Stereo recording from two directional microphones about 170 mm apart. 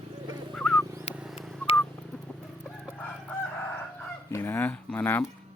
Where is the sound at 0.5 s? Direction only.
Centre (ahead or behind).